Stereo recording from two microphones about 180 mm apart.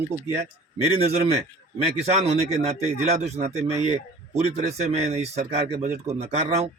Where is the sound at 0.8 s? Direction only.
35° right (ahead or behind).